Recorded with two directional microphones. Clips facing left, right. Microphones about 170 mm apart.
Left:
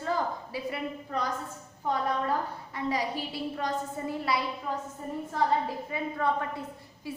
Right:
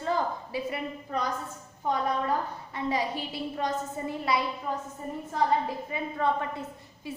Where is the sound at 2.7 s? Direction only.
25° right (ahead or behind).